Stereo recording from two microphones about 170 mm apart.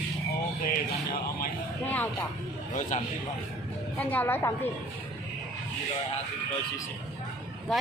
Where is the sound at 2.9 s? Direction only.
45° left (ahead or behind).